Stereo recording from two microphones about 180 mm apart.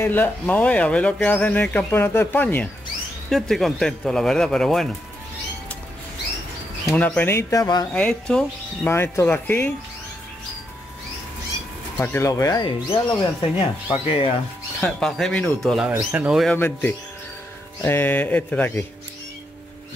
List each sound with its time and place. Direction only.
0.0 s speech: 10° left (ahead or behind)
6.9 s speech: 10° left (ahead or behind)
7.9 s speech: 5° left (ahead or behind)
12.0 s speech: 15° left (ahead or behind); by 14.3 s 30° left (ahead or behind)
14.8 s speech: 5° left (ahead or behind)
16.5 s speech: 10° left (ahead or behind)